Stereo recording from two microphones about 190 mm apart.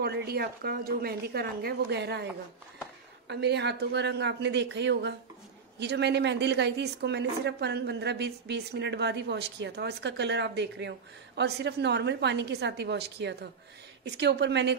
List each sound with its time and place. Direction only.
0.0 s a woman's voice: 60° right (ahead or behind)
3.3 s a woman's voice: 60° right (ahead or behind)